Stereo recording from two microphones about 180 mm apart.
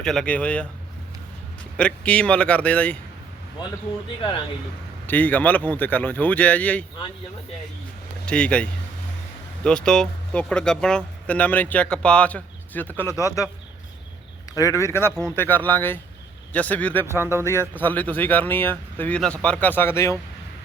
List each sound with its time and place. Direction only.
0.0 s speech: 5° left (ahead or behind)
1.7 s speech: 5° left (ahead or behind)
5.0 s speech: 10° left (ahead or behind)
8.3 s speech: 5° left (ahead or behind)
14.5 s speech: 20° left (ahead or behind)